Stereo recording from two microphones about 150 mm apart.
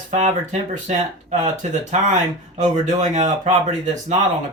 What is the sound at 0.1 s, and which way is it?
Speech, 55° right (ahead or behind).